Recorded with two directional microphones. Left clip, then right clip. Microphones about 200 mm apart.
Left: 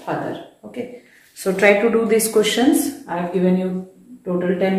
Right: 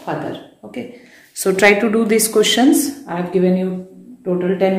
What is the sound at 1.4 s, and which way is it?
A woman's voice, 55° right (ahead or behind).